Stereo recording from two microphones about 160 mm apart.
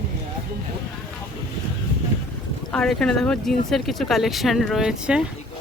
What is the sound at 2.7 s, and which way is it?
Speech, 5° left (ahead or behind).